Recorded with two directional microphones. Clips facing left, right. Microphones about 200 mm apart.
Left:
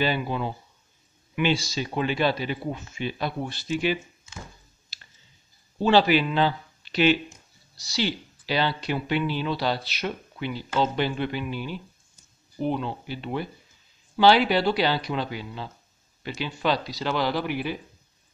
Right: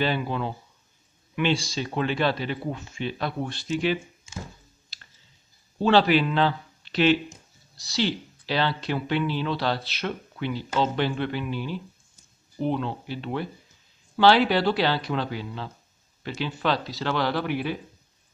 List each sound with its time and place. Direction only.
0.0 s speech: 5° left (ahead or behind)
5.8 s a man's voice: 5° left (ahead or behind)